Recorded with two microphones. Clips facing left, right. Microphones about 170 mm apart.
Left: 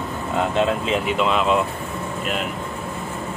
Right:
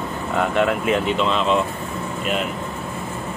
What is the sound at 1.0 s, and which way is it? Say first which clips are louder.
Speech: even; 10° left (ahead or behind).